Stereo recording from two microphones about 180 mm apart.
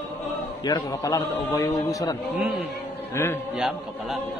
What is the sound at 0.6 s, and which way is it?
A man's voice, 20° left (ahead or behind).